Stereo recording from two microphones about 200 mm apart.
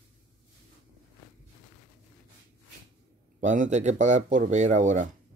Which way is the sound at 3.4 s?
40° right (ahead or behind).